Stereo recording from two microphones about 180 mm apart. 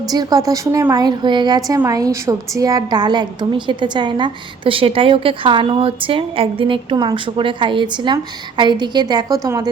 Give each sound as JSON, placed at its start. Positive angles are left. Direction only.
{"t": 0.1, "sound": "a woman's voice", "side_deg": -20}